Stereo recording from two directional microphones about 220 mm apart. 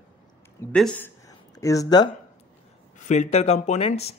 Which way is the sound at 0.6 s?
5° left (ahead or behind).